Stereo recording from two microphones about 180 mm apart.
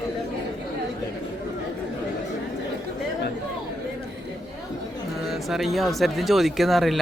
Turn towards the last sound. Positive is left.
turn(degrees=0)  # may be behind; listen again after turning